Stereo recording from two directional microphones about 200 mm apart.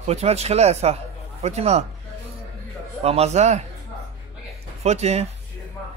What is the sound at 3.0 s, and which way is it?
Speech, 30° right (ahead or behind).